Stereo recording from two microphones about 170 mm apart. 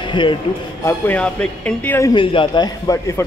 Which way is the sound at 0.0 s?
30° left (ahead or behind).